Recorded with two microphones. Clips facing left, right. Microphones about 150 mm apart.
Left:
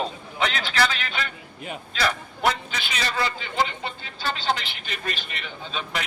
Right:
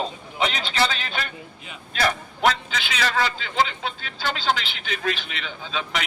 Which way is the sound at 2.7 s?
90° right.